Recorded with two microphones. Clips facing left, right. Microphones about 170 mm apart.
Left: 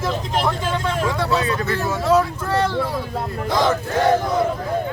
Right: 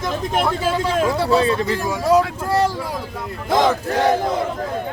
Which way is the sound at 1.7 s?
15° right (ahead or behind).